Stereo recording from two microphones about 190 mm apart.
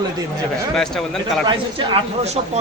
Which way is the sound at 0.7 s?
Centre (ahead or behind).